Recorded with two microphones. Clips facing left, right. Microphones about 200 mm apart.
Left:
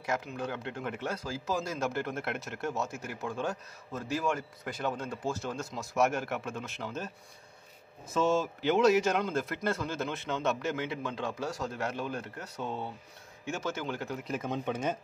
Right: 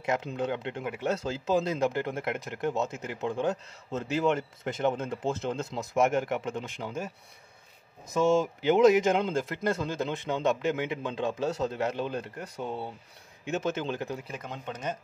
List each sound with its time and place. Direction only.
0.0 s speech: 20° right (ahead or behind)
8.1 s a man's voice: 10° right (ahead or behind)
14.2 s speech: 5° left (ahead or behind)